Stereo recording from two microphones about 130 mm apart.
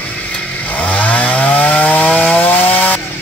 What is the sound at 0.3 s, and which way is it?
Chainsaw, 10° left (ahead or behind).